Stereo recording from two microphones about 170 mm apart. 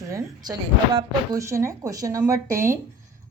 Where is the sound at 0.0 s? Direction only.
20° right (ahead or behind).